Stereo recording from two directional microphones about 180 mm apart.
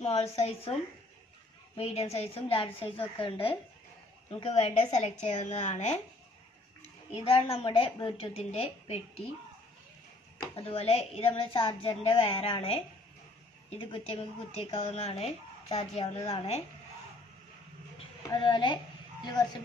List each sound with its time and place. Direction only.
0.0 s speech: 35° left (ahead or behind)
1.8 s speech: 35° left (ahead or behind)
7.2 s speech: 35° left (ahead or behind)
10.4 s speech: 30° left (ahead or behind)
18.3 s a child's voice: 25° left (ahead or behind)